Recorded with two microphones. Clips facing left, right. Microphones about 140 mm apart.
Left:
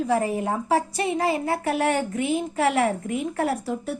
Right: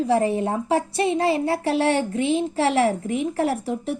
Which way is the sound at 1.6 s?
25° right (ahead or behind).